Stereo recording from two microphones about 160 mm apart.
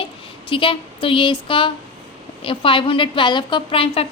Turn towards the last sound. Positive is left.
turn(degrees=35)  # may be behind; listen again after turning